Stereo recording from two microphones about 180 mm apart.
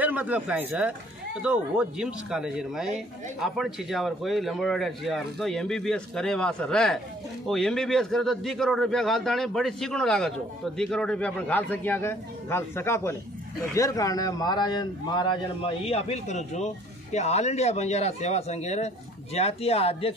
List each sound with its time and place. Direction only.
0.0 s a man's voice: 10° right (ahead or behind); by 20.2 s 30° left (ahead or behind)